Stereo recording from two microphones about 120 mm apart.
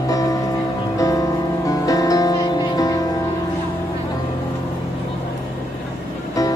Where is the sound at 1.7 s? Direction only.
30° left (ahead or behind).